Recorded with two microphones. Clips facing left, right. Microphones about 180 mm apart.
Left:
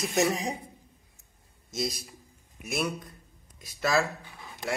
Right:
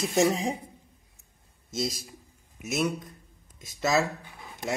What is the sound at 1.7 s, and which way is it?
Speech, 25° right (ahead or behind).